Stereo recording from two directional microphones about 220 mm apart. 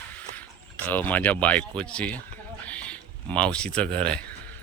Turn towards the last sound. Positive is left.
turn(degrees=5)  # may be behind; listen again after turning